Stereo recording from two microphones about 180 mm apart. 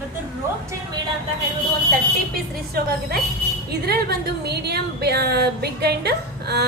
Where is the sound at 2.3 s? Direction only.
60° right (ahead or behind).